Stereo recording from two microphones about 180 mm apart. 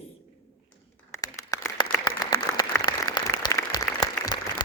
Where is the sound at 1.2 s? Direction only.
20° left (ahead or behind).